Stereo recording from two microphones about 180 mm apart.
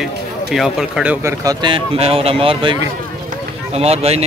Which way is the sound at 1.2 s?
20° right (ahead or behind).